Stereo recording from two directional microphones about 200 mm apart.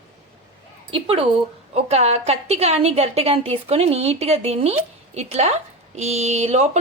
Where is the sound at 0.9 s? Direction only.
30° right (ahead or behind).